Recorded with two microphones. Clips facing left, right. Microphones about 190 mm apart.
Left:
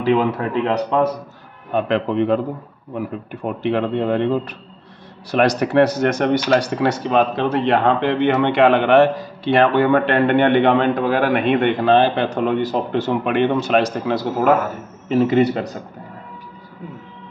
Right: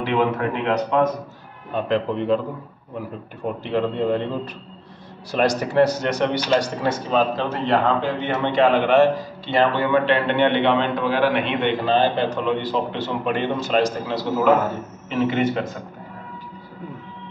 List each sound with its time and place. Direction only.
0.0 s speech: 35° left (ahead or behind)
1.7 s speech: 65° left (ahead or behind)
3.6 s speech: 65° left (ahead or behind); by 6.4 s 50° left (ahead or behind)
6.8 s speech: 65° left (ahead or behind)
15.0 s speech: 40° left (ahead or behind)